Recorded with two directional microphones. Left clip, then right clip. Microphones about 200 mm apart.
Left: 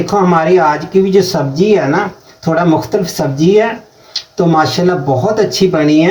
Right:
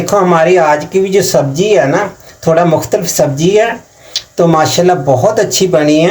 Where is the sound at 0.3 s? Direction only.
45° right (ahead or behind).